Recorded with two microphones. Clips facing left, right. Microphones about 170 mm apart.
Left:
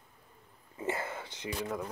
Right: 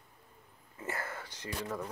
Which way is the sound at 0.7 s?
20° left (ahead or behind).